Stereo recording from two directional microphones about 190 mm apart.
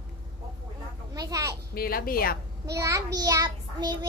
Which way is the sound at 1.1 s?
20° right (ahead or behind).